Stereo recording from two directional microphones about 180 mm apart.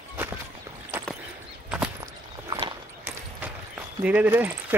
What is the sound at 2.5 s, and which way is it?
Horse, 25° right (ahead or behind).